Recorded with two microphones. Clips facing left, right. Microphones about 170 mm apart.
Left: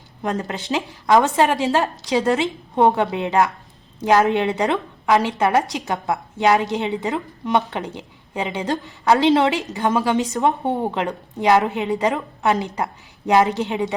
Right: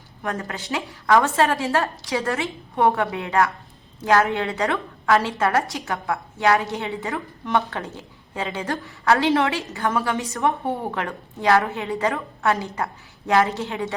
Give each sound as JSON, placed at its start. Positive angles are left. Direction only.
{"t": 0.2, "sound": "a woman's voice", "side_deg": 20}